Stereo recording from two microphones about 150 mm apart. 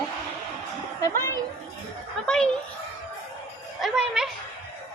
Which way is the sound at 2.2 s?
5° left (ahead or behind).